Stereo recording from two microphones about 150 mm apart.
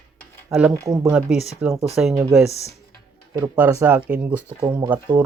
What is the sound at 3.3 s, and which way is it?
Speech, 15° right (ahead or behind).